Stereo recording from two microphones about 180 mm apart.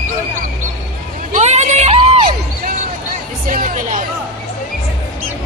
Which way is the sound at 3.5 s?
50° right (ahead or behind).